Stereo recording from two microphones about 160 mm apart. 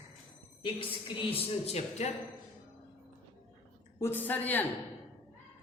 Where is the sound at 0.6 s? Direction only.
35° left (ahead or behind).